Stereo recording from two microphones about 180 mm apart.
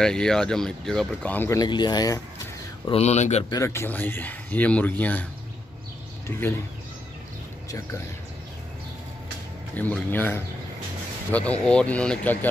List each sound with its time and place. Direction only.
0.0 s speech: 5° left (ahead or behind); by 2.1 s 25° left (ahead or behind)
2.9 s speech: 35° left (ahead or behind)
3.4 s speech: 15° left (ahead or behind)
9.8 s speech: 10° left (ahead or behind)